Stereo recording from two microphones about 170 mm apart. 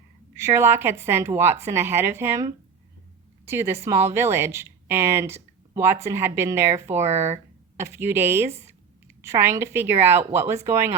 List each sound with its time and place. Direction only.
0.3 s a woman's voice: 15° right (ahead or behind)
7.1 s speech: 40° right (ahead or behind)
7.8 s a woman's voice: 15° right (ahead or behind)